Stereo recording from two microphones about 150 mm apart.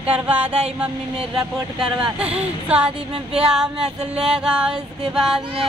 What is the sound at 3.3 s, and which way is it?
Female singing, 5° right (ahead or behind).